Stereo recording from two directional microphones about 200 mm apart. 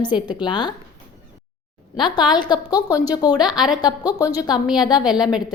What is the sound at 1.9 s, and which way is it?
A woman's voice, 20° left (ahead or behind).